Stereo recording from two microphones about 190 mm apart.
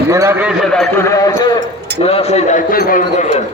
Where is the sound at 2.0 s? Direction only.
30° left (ahead or behind).